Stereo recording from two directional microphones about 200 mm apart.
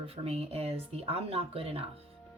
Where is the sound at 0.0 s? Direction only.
30° right (ahead or behind).